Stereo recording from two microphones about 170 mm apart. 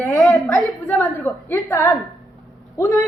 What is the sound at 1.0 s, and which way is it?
A woman's voice, 20° left (ahead or behind).